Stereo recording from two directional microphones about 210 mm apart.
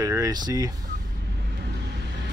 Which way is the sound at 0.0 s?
15° right (ahead or behind).